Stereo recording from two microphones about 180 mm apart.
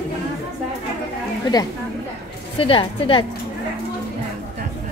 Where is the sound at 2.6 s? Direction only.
30° left (ahead or behind).